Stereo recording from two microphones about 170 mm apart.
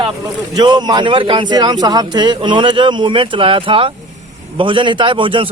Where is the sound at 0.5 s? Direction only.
25° right (ahead or behind).